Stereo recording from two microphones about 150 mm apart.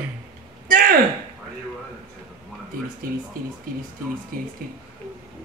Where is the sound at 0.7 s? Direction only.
70° right (ahead or behind).